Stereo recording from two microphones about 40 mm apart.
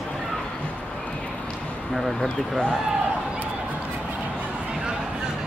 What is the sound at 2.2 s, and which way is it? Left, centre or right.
Speech, left.